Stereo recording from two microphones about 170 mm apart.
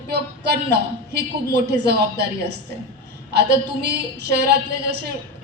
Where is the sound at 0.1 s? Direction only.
70° right (ahead or behind).